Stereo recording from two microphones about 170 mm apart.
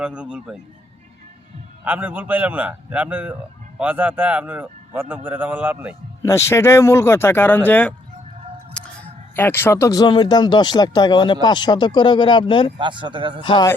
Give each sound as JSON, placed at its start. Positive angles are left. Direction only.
{"t": 0.0, "sound": "a man's voice", "side_deg": -5}
{"t": 1.8, "sound": "a man's voice", "side_deg": -10}
{"t": 6.2, "sound": "speech", "side_deg": 15}
{"t": 9.3, "sound": "speech", "side_deg": 15}
{"t": 12.8, "sound": "speech", "side_deg": -30}
{"t": 13.4, "sound": "speech", "side_deg": 30}